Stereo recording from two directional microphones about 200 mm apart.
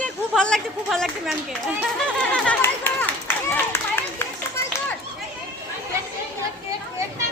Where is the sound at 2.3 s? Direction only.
5° left (ahead or behind).